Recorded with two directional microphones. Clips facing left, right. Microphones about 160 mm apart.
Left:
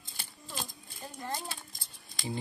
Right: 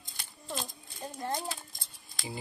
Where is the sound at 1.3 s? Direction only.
Centre (ahead or behind).